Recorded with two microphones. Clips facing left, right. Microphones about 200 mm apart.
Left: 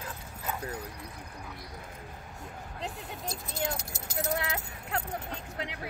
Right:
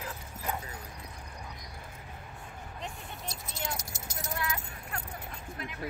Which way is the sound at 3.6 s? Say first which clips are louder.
Left 4 dB; 60° left (ahead or behind).